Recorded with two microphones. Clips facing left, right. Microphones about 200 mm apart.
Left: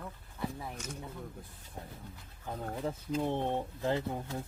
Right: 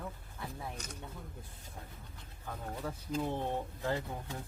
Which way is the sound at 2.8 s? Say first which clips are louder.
Left 3 dB; 25° left (ahead or behind).